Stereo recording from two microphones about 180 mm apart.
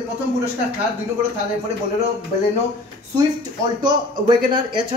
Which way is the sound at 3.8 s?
25° right (ahead or behind).